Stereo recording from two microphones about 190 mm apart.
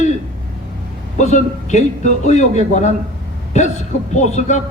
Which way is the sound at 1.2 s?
40° left (ahead or behind).